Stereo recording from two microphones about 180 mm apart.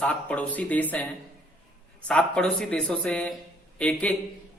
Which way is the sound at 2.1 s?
5° left (ahead or behind).